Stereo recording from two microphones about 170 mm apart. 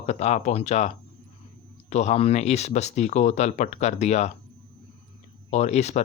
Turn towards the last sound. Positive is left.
turn(degrees=40)  # may be behind; listen again after turning